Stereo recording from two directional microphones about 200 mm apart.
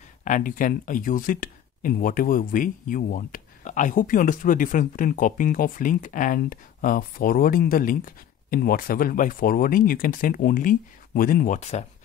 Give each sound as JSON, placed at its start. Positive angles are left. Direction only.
{"t": 0.2, "sound": "speech", "side_deg": 40}